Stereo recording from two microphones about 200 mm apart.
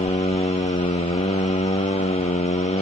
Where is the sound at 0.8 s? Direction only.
30° left (ahead or behind).